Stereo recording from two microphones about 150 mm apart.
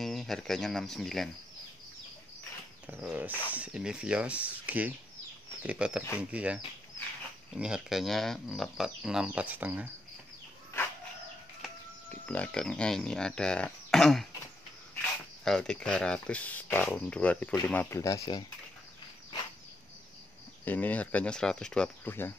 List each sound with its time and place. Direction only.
0.0 s speech: centre (ahead or behind)
2.9 s speech: 10° right (ahead or behind)
11.6 s a sound: centre (ahead or behind)
12.1 s speech: 10° left (ahead or behind)
15.4 s speech: 5° left (ahead or behind); by 18.4 s 25° left (ahead or behind)
20.6 s speech: 10° left (ahead or behind)